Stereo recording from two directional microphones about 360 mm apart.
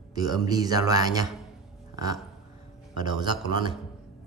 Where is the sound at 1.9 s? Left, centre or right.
Centre.